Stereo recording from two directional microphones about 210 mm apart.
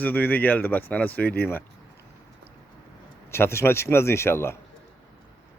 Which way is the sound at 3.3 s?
10° left (ahead or behind).